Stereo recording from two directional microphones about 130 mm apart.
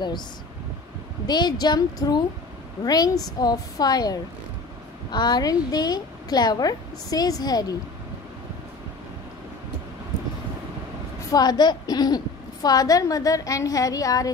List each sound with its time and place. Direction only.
1.2 s a woman's voice: 30° left (ahead or behind)
11.3 s a woman's voice: 35° left (ahead or behind)